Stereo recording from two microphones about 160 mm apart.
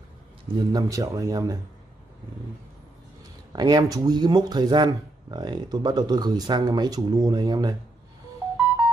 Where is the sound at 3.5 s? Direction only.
25° right (ahead or behind).